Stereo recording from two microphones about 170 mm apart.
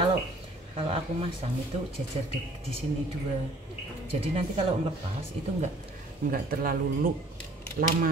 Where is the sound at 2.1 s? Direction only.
35° right (ahead or behind).